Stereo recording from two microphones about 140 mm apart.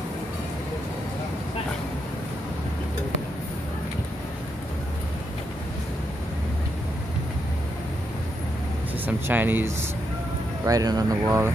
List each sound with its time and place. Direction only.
9.0 s speech: 15° right (ahead or behind)
10.6 s speech: 25° right (ahead or behind)